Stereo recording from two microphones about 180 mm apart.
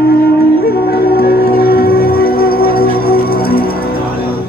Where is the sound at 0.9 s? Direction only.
55° left (ahead or behind).